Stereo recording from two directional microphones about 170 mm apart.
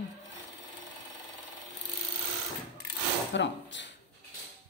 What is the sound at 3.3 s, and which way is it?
Speech, 90° left.